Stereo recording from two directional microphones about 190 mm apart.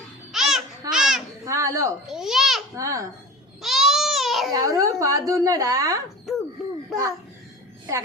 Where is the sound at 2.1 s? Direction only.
Centre (ahead or behind).